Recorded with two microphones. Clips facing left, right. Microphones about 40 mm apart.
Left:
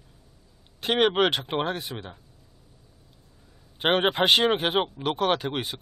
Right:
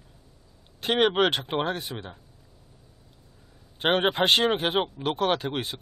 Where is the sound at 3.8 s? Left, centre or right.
Centre.